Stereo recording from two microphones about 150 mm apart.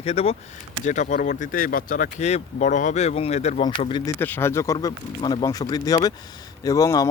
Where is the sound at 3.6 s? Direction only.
30° left (ahead or behind).